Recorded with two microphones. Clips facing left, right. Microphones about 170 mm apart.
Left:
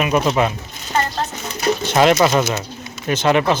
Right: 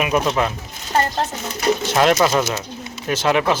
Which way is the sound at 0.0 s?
Centre (ahead or behind).